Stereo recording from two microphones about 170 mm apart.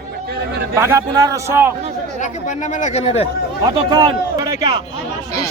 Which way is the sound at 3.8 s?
30° right (ahead or behind).